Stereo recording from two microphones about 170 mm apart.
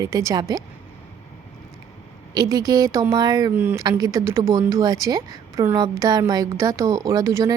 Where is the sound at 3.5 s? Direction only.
10° right (ahead or behind).